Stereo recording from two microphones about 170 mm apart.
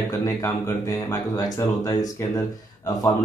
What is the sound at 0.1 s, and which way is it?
Speech, 15° left (ahead or behind).